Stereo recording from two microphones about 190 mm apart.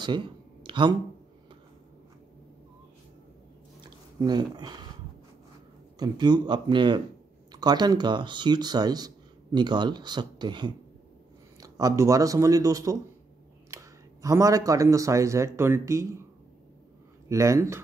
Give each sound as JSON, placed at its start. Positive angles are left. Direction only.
{"t": 0.7, "sound": "a sound", "side_deg": -25}
{"t": 4.2, "sound": "speech", "side_deg": -20}
{"t": 5.9, "sound": "a man's voice", "side_deg": -20}
{"t": 17.3, "sound": "a man's voice", "side_deg": -15}